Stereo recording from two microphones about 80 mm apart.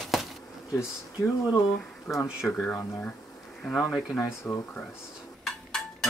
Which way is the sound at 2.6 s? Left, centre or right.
Left.